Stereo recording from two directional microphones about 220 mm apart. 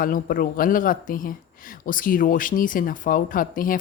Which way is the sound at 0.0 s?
40° left (ahead or behind).